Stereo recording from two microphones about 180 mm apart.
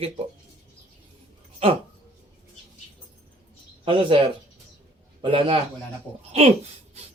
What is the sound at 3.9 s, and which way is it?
Speech, 30° right (ahead or behind).